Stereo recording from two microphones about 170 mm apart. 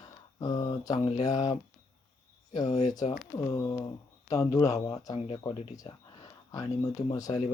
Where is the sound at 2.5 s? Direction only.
25° left (ahead or behind).